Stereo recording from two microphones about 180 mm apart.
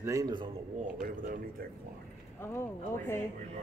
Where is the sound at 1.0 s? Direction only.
55° right (ahead or behind).